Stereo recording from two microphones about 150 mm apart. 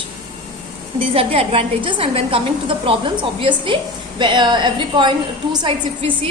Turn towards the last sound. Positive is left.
turn(degrees=-35)  # may be behind; listen again after turning